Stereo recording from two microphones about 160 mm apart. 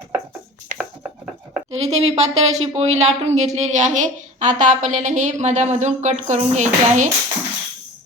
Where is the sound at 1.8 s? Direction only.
40° right (ahead or behind).